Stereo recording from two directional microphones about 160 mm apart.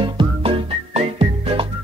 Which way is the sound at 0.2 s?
35° right (ahead or behind).